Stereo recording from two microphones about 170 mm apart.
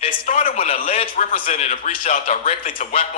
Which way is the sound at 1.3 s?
50° left (ahead or behind).